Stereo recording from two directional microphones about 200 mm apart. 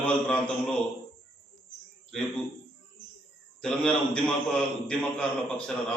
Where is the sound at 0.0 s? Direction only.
5° left (ahead or behind).